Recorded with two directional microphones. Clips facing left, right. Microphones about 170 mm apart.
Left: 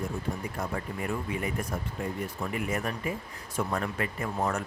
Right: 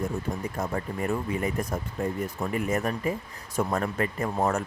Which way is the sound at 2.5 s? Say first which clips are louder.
Right 5 dB; 40° right (ahead or behind).